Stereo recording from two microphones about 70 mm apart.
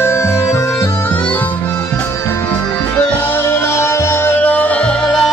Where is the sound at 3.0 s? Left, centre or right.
Left.